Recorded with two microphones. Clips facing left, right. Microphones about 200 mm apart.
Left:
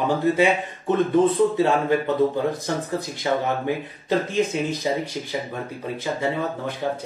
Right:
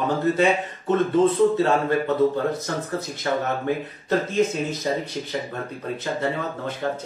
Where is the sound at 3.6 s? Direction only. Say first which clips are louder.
Even; 15° left (ahead or behind).